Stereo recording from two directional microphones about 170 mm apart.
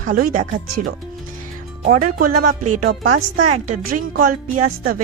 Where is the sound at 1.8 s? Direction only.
50° right (ahead or behind).